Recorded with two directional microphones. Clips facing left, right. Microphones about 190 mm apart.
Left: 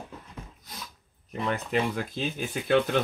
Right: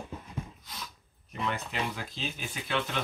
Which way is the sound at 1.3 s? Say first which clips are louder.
Left 5 dB; 50° left (ahead or behind).